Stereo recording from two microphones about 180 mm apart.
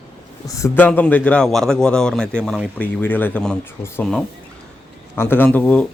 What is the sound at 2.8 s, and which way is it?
Speech, 10° left (ahead or behind).